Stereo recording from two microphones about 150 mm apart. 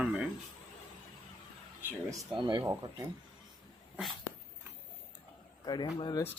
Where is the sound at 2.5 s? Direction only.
25° right (ahead or behind).